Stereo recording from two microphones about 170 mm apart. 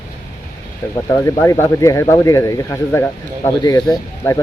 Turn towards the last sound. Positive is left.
turn(degrees=20)  # may be behind; listen again after turning